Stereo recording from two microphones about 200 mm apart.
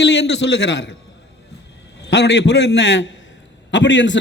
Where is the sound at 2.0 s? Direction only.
60° left (ahead or behind).